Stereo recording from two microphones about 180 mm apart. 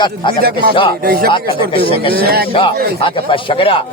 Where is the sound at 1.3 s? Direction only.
30° left (ahead or behind).